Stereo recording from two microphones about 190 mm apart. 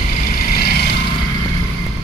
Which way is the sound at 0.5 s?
55° left (ahead or behind).